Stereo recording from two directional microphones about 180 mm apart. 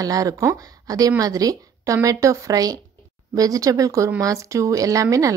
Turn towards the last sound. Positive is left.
turn(degrees=-20)  # may be behind; listen again after turning